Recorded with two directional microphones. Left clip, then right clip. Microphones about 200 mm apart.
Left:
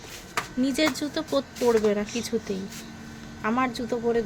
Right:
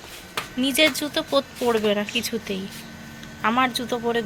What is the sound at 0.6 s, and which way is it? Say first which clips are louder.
Speech: right 6 dB; 10° left (ahead or behind).